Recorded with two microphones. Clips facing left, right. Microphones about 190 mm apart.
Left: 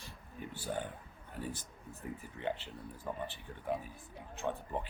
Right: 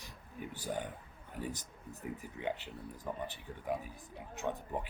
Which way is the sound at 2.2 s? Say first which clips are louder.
Left 1 dB; 15° right (ahead or behind).